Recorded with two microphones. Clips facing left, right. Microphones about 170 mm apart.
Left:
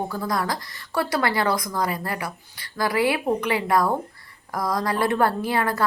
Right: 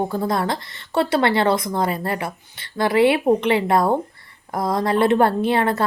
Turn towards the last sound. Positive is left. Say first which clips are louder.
# right 5 dB
turn(degrees=-25)  # may be behind; listen again after turning